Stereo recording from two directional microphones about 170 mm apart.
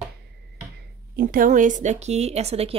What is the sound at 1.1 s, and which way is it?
A woman's voice, 55° right (ahead or behind).